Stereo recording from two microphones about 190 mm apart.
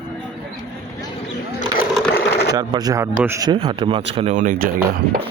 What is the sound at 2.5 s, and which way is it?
Speech, 20° right (ahead or behind).